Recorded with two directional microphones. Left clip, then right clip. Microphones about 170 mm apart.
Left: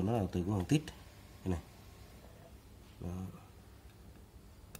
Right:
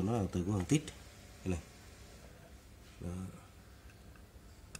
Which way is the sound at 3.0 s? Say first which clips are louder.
Even; 5° left (ahead or behind).